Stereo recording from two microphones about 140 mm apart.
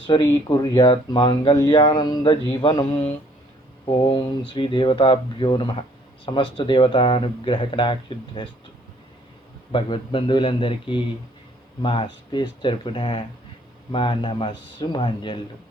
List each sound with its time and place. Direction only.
0.1 s speech: 30° left (ahead or behind)
9.7 s speech: 40° left (ahead or behind)